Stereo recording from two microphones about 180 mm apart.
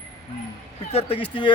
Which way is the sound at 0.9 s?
30° left (ahead or behind).